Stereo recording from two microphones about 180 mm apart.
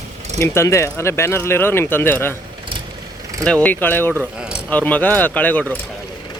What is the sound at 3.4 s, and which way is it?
Speech, 5° left (ahead or behind).